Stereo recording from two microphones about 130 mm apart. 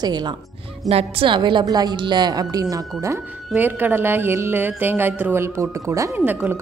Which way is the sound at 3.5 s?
15° right (ahead or behind).